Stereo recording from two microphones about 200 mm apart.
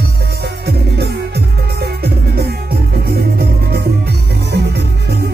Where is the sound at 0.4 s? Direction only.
55° right (ahead or behind).